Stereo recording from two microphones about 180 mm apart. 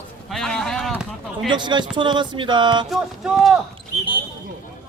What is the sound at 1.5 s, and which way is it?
Speech, 25° right (ahead or behind).